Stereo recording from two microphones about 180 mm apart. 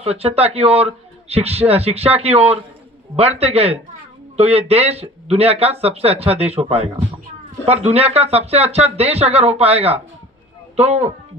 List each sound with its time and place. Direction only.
0.0 s speech: 35° right (ahead or behind)